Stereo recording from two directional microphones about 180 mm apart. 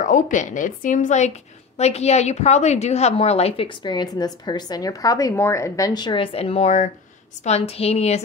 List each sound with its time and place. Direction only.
0.0 s a woman's voice: 45° left (ahead or behind)